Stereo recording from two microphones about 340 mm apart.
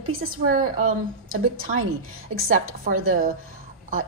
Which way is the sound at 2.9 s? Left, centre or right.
Right.